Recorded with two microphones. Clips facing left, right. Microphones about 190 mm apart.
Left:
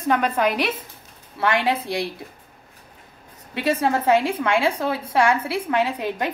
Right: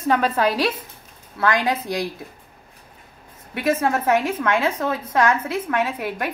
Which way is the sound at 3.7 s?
15° left (ahead or behind).